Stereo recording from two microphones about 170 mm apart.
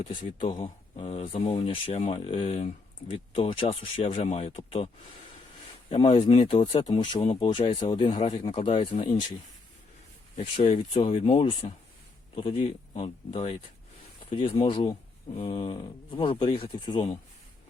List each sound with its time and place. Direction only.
0.2 s speech: 25° left (ahead or behind)
5.9 s speech: 30° left (ahead or behind)
8.4 s speech: 30° left (ahead or behind)
10.3 s speech: 35° left (ahead or behind)